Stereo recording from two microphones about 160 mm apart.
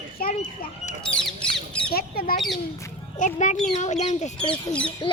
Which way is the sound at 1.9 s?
70° left (ahead or behind).